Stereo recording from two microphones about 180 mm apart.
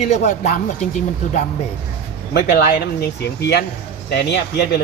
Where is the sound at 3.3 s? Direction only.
70° left (ahead or behind).